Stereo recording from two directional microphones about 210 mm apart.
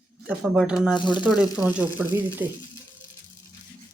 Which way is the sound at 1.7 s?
10° right (ahead or behind).